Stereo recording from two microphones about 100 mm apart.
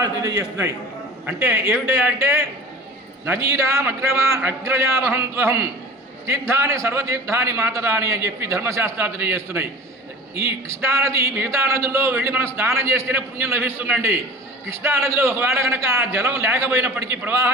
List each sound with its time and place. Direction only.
0.0 s a man's voice: 35° right (ahead or behind)
1.3 s a man's voice: 20° right (ahead or behind)